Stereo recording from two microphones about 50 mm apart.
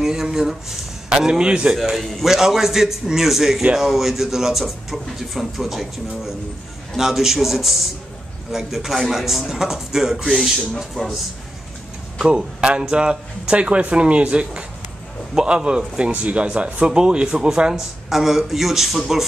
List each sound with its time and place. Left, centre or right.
0.0 s speech: centre
1.9 s a man's voice: centre
12.2 s a man's voice: centre
18.1 s a man's voice: centre